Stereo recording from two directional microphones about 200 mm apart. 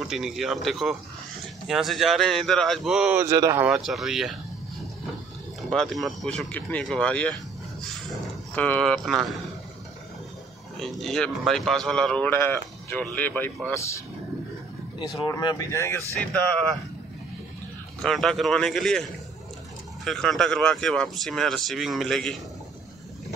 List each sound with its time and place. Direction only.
0.1 s speech: centre (ahead or behind)
3.6 s speech: centre (ahead or behind)
5.6 s speech: centre (ahead or behind)
10.8 s speech: centre (ahead or behind)
15.1 s speech: 20° left (ahead or behind)
18.0 s speech: centre (ahead or behind)
20.1 s speech: 5° left (ahead or behind)